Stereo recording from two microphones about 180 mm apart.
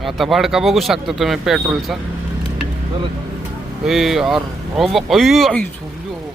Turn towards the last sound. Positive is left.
turn(degrees=0)  # may be behind; listen again after turning